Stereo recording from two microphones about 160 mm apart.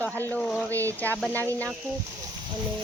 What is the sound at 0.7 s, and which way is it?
Speech, 20° right (ahead or behind).